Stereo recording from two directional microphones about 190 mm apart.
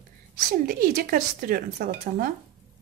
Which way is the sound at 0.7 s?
50° right (ahead or behind).